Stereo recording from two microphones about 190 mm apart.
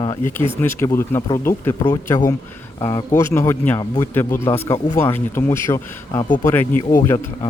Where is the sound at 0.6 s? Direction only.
15° left (ahead or behind).